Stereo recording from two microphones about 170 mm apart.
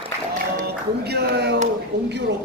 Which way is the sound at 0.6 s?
75° right (ahead or behind).